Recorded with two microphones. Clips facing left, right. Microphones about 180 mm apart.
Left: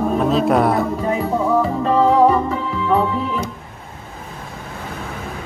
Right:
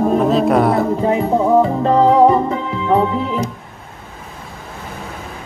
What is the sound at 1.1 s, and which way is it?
Music, 20° right (ahead or behind).